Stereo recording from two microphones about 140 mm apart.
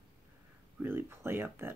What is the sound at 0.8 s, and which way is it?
Speech, 15° right (ahead or behind).